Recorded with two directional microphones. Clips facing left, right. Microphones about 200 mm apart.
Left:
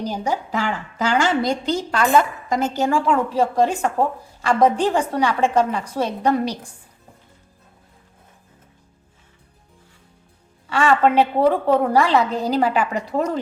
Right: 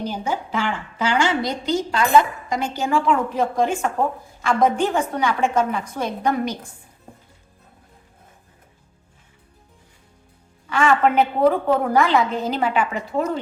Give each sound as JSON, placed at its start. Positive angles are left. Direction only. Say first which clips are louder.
{"t": 0.1, "sound": "a woman's voice", "louder": "left 2 dB", "side_deg": 40}
{"t": 10.7, "sound": "a woman's voice", "louder": "left 1 dB", "side_deg": 30}